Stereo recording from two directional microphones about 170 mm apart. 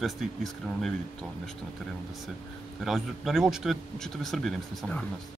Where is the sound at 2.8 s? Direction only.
Centre (ahead or behind).